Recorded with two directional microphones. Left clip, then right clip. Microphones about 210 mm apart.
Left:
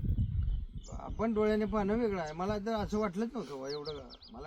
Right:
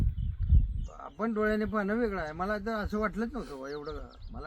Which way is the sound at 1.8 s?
30° left (ahead or behind).